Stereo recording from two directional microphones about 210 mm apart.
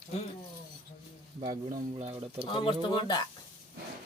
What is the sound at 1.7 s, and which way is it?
Speech, 35° right (ahead or behind).